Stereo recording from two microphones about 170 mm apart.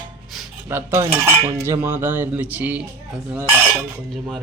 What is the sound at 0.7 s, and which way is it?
Cutlery, 15° right (ahead or behind).